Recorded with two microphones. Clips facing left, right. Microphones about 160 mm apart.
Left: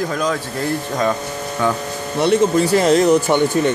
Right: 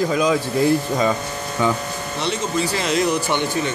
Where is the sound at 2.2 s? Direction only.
55° left (ahead or behind).